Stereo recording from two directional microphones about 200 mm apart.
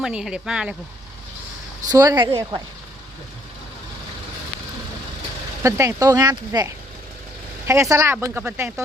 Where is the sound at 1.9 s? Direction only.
20° right (ahead or behind).